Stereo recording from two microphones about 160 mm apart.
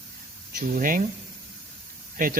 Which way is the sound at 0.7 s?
60° right (ahead or behind).